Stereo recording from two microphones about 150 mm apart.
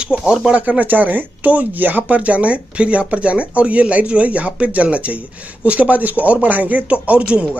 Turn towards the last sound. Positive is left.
turn(degrees=-10)  # may be behind; listen again after turning